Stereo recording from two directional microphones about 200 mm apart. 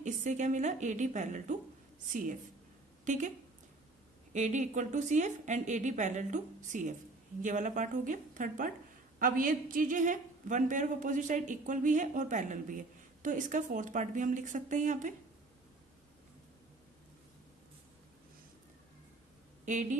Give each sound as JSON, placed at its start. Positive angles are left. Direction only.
{"t": 0.0, "sound": "speech", "side_deg": -35}
{"t": 3.1, "sound": "speech", "side_deg": -40}
{"t": 19.6, "sound": "speech", "side_deg": -40}